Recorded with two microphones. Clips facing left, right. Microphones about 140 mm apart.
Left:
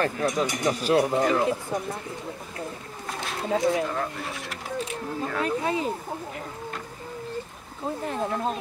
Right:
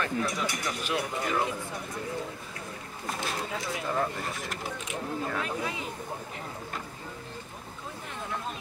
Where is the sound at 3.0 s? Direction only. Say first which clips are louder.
Even; centre (ahead or behind).